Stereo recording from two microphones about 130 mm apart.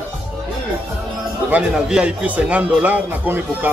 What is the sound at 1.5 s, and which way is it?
Speech, 5° right (ahead or behind).